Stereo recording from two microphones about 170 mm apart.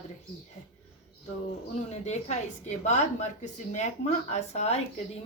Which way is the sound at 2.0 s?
40° left (ahead or behind).